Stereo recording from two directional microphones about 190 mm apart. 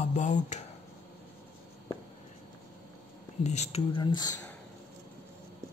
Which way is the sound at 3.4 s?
35° left (ahead or behind).